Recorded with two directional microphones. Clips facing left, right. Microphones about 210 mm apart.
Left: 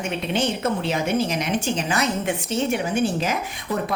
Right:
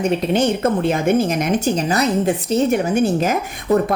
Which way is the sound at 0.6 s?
50° right (ahead or behind).